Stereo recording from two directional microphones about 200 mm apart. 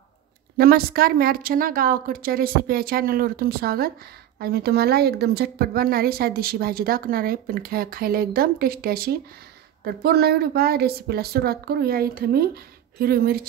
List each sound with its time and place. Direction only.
0.6 s speech: 50° right (ahead or behind)